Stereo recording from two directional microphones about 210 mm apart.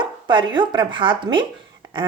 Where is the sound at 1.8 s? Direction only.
20° right (ahead or behind).